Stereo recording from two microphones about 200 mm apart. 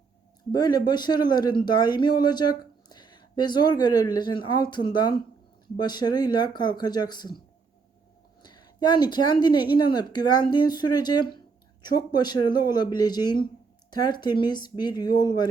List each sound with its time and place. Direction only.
0.5 s speech: 20° left (ahead or behind)